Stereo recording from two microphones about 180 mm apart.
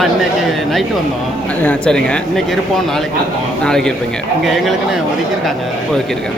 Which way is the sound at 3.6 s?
5° left (ahead or behind).